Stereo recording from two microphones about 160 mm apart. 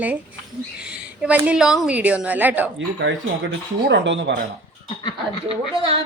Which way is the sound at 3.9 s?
90° right.